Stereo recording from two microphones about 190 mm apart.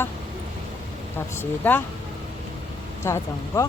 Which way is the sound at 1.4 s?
10° left (ahead or behind).